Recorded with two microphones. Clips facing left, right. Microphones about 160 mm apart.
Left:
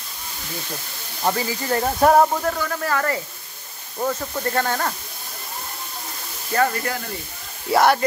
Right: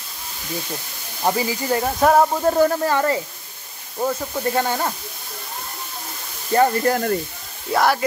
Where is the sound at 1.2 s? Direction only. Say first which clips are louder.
Right 2 dB; 15° right (ahead or behind).